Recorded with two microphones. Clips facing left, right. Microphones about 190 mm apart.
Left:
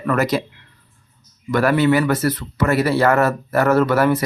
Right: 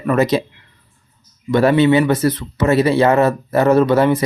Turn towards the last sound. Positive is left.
turn(degrees=-20)  # may be behind; listen again after turning